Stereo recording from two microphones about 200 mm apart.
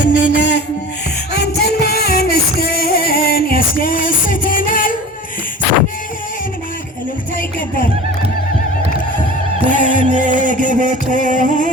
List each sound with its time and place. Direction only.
0.1 s a sound: 60° left (ahead or behind)
1.3 s music: 50° left (ahead or behind)
9.7 s music: 40° left (ahead or behind)
10.1 s music: 40° right (ahead or behind)
10.3 s music: 40° left (ahead or behind)